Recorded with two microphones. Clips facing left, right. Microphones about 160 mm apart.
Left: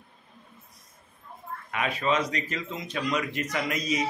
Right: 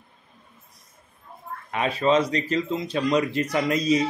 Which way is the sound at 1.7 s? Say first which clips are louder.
Right 6 dB; 30° right (ahead or behind).